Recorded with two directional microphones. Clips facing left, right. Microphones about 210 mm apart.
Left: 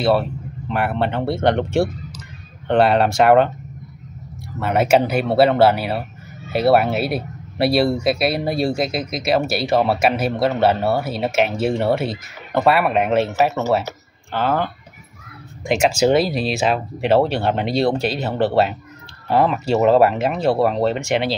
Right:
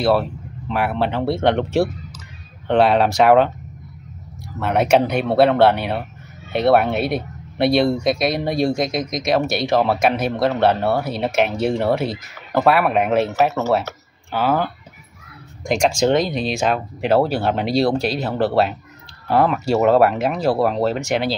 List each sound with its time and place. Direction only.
0.0 s speech: centre (ahead or behind)
4.6 s speech: centre (ahead or behind)